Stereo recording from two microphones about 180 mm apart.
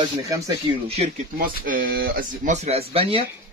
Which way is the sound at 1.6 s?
50° right (ahead or behind).